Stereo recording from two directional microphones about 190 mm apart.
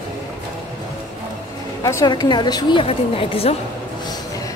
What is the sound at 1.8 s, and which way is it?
A woman's voice, 20° left (ahead or behind).